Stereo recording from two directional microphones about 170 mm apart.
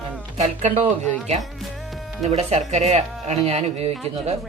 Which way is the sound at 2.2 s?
40° right (ahead or behind).